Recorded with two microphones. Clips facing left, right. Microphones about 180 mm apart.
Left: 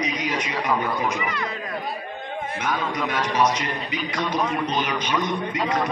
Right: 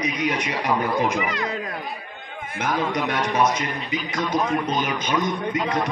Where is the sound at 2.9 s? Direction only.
60° right (ahead or behind).